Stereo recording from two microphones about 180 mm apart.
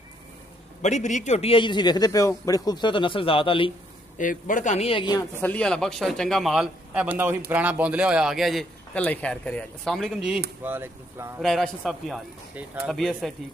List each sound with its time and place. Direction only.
0.8 s a man's voice: 40° left (ahead or behind)
4.2 s speech: 50° left (ahead or behind); by 5.2 s 25° left (ahead or behind)
5.4 s a man's voice: 5° left (ahead or behind); by 11.4 s 15° right (ahead or behind)
11.4 s a man's voice: centre (ahead or behind)